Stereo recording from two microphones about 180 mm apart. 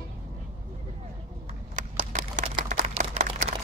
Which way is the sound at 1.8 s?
45° right (ahead or behind).